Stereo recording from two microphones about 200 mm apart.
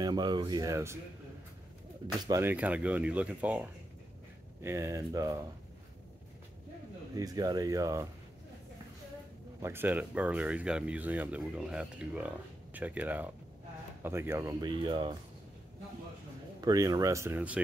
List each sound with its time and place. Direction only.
0.0 s speech: 20° right (ahead or behind)
2.2 s speech: 15° right (ahead or behind)
4.6 s speech: 15° right (ahead or behind)
7.2 s speech: 20° right (ahead or behind)
9.6 s speech: 10° right (ahead or behind)
16.6 s speech: 20° right (ahead or behind)